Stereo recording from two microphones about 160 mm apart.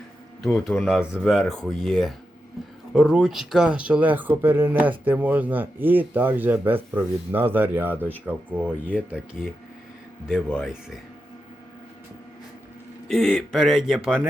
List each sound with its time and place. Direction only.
0.4 s speech: centre (ahead or behind)
10.6 s speech: 5° right (ahead or behind)
13.1 s speech: centre (ahead or behind)